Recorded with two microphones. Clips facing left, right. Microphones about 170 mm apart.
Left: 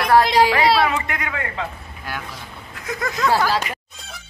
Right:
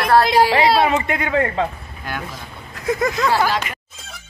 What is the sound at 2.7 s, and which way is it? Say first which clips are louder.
Speech: right 7 dB; 25° right (ahead or behind).